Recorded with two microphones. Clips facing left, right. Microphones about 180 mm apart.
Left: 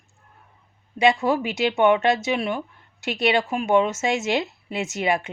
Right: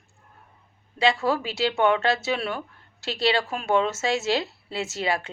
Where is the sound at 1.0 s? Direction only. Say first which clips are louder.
Left 3 dB; 20° left (ahead or behind).